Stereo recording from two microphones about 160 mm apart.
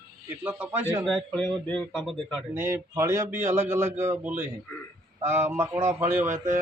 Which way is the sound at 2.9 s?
15° right (ahead or behind).